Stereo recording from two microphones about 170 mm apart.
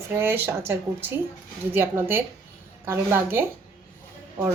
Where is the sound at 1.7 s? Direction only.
10° right (ahead or behind).